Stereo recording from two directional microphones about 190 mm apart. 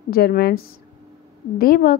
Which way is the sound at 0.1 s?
55° left (ahead or behind).